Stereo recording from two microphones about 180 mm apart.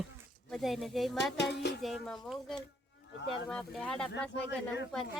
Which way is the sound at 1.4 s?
70° left (ahead or behind).